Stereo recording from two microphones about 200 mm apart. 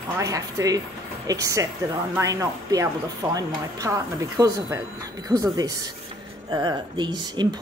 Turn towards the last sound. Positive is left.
turn(degrees=-20)  # may be behind; listen again after turning